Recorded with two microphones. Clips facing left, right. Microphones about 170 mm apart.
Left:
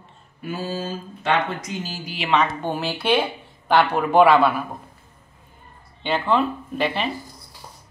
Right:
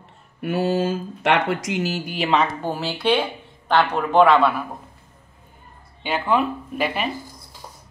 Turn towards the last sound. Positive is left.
turn(degrees=-10)  # may be behind; listen again after turning